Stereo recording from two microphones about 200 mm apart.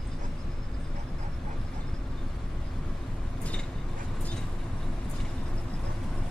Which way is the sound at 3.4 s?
5° left (ahead or behind).